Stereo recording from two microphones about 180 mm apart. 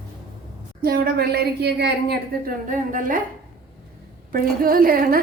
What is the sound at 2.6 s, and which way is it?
Speech, 45° right (ahead or behind).